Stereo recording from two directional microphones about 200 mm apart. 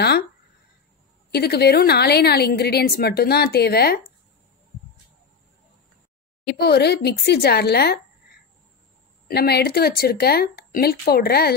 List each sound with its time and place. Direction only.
1.3 s a woman's voice: 55° left (ahead or behind)
6.4 s a woman's voice: 55° left (ahead or behind)
9.3 s a woman's voice: 50° left (ahead or behind)